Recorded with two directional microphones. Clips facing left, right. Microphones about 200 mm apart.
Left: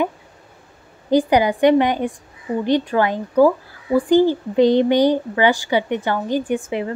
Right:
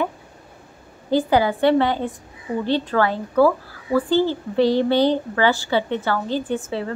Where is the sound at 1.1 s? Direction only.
15° left (ahead or behind).